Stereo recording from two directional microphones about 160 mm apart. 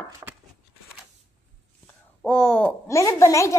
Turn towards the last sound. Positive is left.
turn(degrees=20)  # may be behind; listen again after turning